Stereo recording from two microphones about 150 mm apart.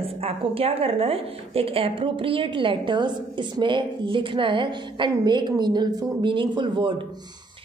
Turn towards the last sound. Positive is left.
turn(degrees=-35)  # may be behind; listen again after turning